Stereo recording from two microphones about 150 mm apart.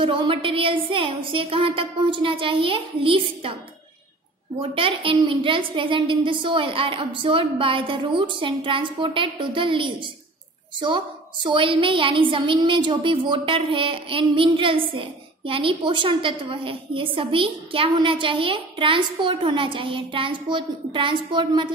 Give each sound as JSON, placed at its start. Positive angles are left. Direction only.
{"t": 0.0, "sound": "a woman's voice", "side_deg": -35}
{"t": 4.6, "sound": "a woman's voice", "side_deg": -35}
{"t": 11.4, "sound": "a woman's voice", "side_deg": -35}